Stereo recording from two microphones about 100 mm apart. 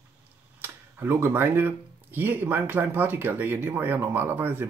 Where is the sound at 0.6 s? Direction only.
20° right (ahead or behind).